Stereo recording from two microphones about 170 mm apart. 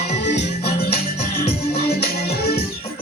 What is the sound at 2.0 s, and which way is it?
Music, 65° left (ahead or behind).